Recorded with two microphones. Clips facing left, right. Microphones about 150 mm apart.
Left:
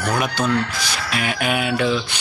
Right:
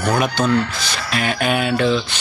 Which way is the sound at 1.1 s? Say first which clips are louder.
Right 3 dB; 5° left (ahead or behind).